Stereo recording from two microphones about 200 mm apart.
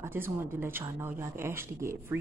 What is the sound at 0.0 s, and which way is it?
Speech, 10° right (ahead or behind).